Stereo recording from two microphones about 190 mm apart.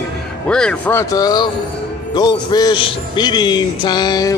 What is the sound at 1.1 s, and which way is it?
A man's voice, 20° left (ahead or behind).